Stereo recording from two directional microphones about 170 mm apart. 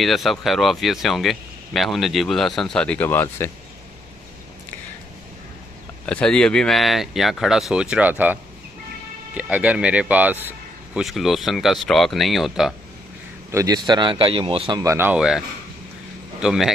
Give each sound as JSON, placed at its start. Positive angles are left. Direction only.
{"t": 0.0, "sound": "speech", "side_deg": 0}
{"t": 6.0, "sound": "speech", "side_deg": 5}
{"t": 13.5, "sound": "speech", "side_deg": -20}